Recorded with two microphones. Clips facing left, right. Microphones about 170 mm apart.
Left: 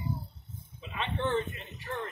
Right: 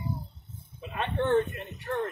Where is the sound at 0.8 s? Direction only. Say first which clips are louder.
Right 4 dB; 55° right (ahead or behind).